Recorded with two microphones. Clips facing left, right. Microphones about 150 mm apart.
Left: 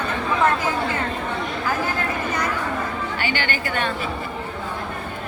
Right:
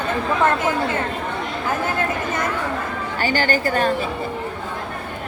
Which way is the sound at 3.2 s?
40° right (ahead or behind).